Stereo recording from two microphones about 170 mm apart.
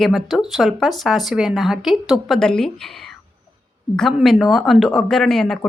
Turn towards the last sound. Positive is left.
turn(degrees=0)  # may be behind; listen again after turning